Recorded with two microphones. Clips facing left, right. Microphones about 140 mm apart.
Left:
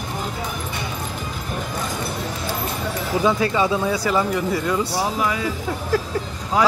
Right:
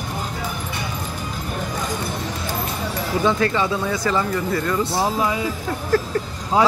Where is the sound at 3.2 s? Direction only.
10° left (ahead or behind).